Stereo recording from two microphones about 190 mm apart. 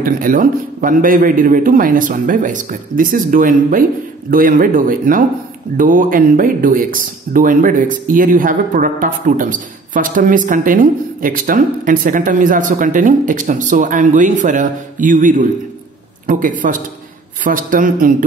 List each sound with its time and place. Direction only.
0.0 s speech: 45° right (ahead or behind)